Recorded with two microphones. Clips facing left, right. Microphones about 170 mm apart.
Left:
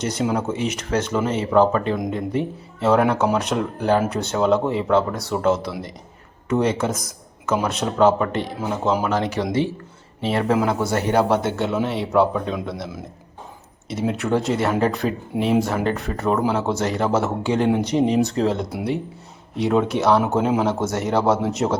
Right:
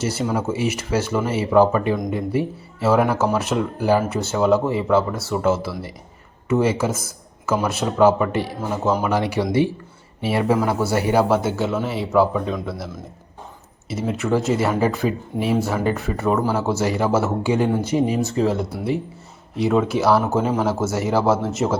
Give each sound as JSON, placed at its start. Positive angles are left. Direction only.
{"t": 0.0, "sound": "speech", "side_deg": -5}
{"t": 14.0, "sound": "speech", "side_deg": 0}